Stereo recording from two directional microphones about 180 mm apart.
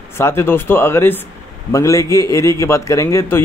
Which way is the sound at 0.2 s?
10° left (ahead or behind).